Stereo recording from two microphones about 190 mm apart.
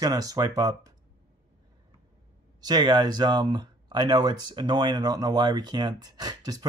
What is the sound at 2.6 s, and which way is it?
Speech, 20° right (ahead or behind).